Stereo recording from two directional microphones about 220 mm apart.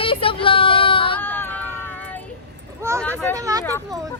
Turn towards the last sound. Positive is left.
turn(degrees=-15)  # may be behind; listen again after turning